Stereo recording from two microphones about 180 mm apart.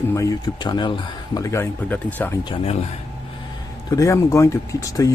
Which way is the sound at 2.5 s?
35° left (ahead or behind).